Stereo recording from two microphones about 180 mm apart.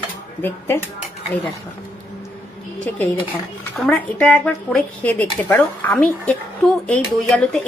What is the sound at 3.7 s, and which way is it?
Speech, 5° left (ahead or behind).